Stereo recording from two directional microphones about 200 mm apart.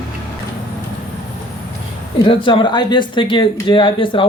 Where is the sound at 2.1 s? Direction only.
25° left (ahead or behind).